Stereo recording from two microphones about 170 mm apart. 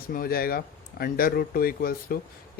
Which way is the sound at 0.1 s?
60° left (ahead or behind).